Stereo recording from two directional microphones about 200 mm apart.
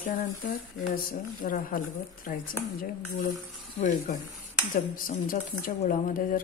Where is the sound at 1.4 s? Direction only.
40° left (ahead or behind).